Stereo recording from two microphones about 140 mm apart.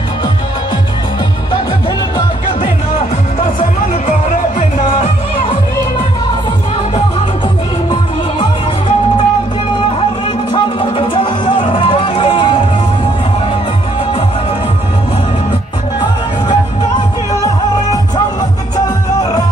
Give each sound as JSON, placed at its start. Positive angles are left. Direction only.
{"t": 5.0, "sound": "music", "side_deg": 45}
{"t": 7.9, "sound": "music", "side_deg": 40}
{"t": 10.5, "sound": "music", "side_deg": 35}